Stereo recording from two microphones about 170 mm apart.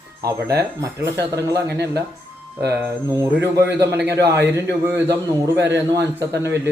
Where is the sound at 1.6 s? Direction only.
75° right (ahead or behind).